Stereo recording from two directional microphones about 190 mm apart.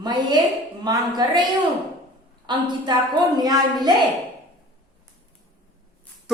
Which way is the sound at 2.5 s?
25° right (ahead or behind).